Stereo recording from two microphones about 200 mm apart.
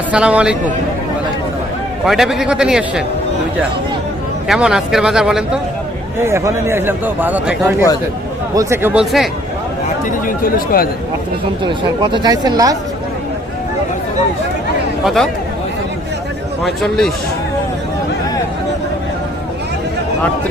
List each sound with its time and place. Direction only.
0.1 s a man's voice: 5° right (ahead or behind)
2.0 s a man's voice: centre (ahead or behind)
4.4 s a man's voice: centre (ahead or behind)
6.2 s a man's voice: 15° right (ahead or behind)
10.1 s speech: 45° left (ahead or behind)
11.6 s speech: 25° right (ahead or behind)
15.0 s a man's voice: centre (ahead or behind)
16.6 s a man's voice: centre (ahead or behind)